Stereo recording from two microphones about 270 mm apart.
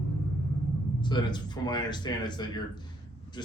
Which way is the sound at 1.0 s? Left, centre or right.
Centre.